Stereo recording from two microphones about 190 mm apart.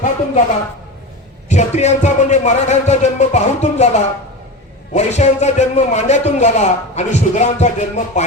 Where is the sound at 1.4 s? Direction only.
35° left (ahead or behind).